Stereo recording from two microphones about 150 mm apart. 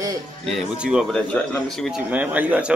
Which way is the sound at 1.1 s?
5° left (ahead or behind).